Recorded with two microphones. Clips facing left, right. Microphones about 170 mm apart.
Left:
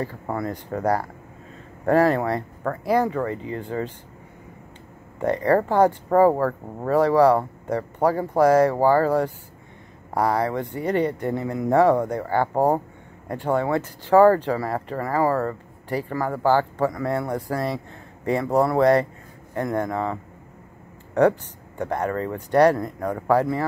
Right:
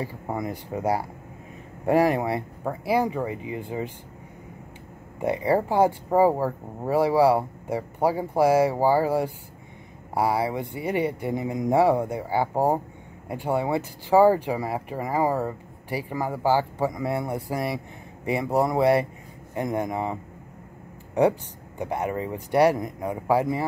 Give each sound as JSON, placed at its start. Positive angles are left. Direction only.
{"t": 0.0, "sound": "speech", "side_deg": -15}
{"t": 5.2, "sound": "speech", "side_deg": -10}